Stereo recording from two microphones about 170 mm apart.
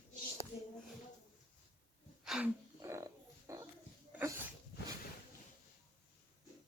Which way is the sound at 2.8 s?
15° right (ahead or behind).